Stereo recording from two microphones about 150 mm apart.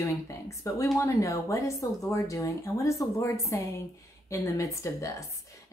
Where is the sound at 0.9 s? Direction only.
20° left (ahead or behind).